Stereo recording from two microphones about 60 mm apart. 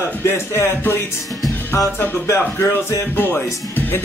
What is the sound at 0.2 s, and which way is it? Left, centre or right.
Speech, left.